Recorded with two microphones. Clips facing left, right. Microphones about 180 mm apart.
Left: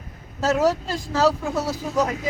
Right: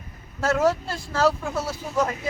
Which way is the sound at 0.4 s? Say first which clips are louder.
Left 1 dB; 15° left (ahead or behind).